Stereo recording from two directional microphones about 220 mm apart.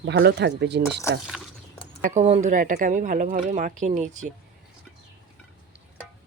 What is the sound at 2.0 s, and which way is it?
Speech, 30° right (ahead or behind).